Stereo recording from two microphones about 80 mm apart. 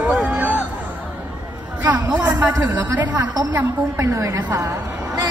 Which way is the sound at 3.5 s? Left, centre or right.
Right.